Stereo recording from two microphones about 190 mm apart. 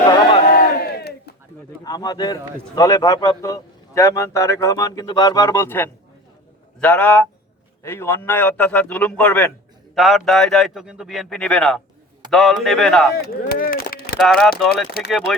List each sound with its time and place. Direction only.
0.0 s crowd: 25° left (ahead or behind)
0.5 s battle cry: 55° left (ahead or behind)
1.8 s a man's voice: 20° left (ahead or behind); by 13.1 s centre (ahead or behind)
13.2 s a sound: 50° left (ahead or behind)
14.2 s a man's voice: centre (ahead or behind)